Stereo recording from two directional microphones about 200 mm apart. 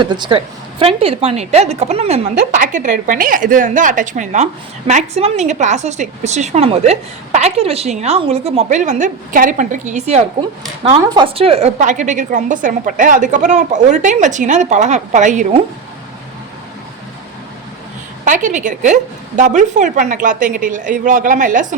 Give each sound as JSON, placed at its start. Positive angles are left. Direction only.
{"t": 0.0, "sound": "a woman's voice", "side_deg": -20}
{"t": 18.3, "sound": "a woman's voice", "side_deg": -40}